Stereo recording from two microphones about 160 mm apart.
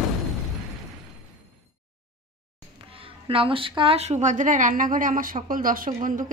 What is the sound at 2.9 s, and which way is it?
A woman's voice, 35° right (ahead or behind).